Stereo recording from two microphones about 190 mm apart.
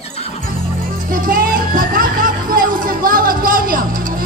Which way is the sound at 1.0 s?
50° right (ahead or behind).